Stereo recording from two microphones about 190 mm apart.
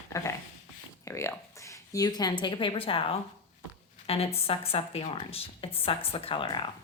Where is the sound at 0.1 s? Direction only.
15° left (ahead or behind).